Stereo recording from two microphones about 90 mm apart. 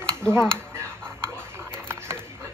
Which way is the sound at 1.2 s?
25° right (ahead or behind).